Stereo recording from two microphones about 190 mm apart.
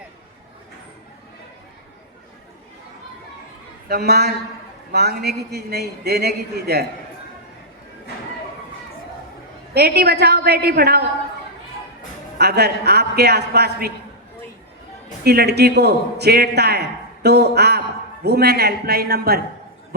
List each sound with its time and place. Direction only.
3.8 s a man's voice: 55° right (ahead or behind)
9.7 s a man's voice: 55° right (ahead or behind)
12.4 s a man's voice: 60° right (ahead or behind)
15.2 s a man's voice: 55° right (ahead or behind)